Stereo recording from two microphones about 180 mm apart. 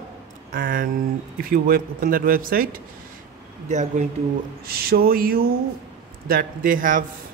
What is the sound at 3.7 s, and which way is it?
Speech, 40° right (ahead or behind).